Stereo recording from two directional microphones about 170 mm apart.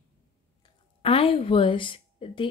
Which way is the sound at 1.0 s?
35° left (ahead or behind).